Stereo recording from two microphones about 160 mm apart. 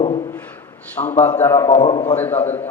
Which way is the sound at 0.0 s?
35° left (ahead or behind).